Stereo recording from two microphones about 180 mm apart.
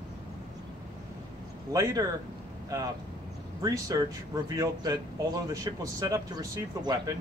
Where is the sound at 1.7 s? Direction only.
15° right (ahead or behind).